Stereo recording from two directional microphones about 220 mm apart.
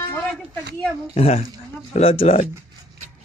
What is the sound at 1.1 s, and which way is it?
Speech, 30° left (ahead or behind).